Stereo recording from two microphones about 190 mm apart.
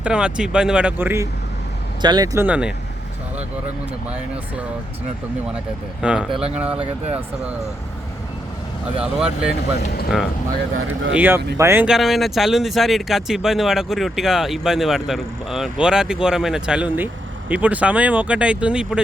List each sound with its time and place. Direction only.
0.0 s speech: 5° right (ahead or behind)
6.0 s speech: 5° right (ahead or behind)
6.7 s speech: 30° right (ahead or behind)
9.0 s speech: 5° right (ahead or behind)
10.8 s speech: 90° right
11.1 s speech: 10° right (ahead or behind)